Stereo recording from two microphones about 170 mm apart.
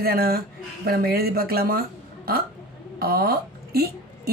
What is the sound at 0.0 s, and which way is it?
A woman's voice, 65° right (ahead or behind).